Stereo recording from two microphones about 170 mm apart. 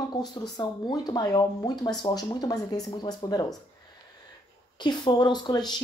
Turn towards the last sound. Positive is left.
turn(degrees=25)  # may be behind; listen again after turning